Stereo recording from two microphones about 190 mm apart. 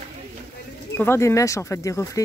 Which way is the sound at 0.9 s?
15° left (ahead or behind).